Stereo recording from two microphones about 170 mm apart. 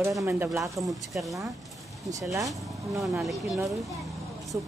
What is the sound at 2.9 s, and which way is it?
Speech, centre (ahead or behind).